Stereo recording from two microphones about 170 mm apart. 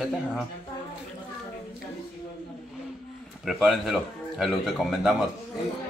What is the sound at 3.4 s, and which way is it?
A man's voice, centre (ahead or behind).